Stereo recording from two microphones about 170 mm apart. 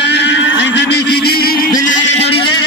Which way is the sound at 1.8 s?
35° left (ahead or behind).